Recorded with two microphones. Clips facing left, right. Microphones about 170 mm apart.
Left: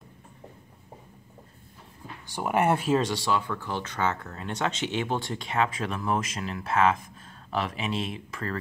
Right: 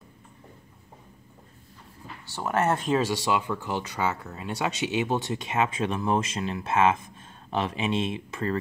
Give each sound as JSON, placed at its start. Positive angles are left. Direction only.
{"t": 2.2, "sound": "speech", "side_deg": 15}
{"t": 3.0, "sound": "speech", "side_deg": -10}